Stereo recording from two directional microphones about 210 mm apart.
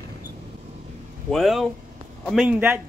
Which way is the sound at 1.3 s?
Centre (ahead or behind).